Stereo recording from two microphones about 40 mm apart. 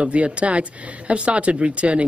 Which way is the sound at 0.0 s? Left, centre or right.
Right.